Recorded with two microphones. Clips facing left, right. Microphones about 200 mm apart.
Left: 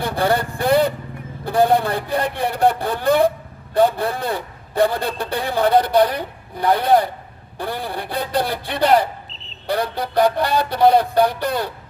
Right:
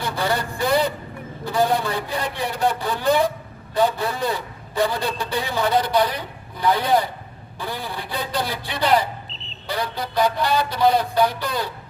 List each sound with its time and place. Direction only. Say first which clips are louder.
0.0 s a man's voice: left 4 dB; 55° left (ahead or behind)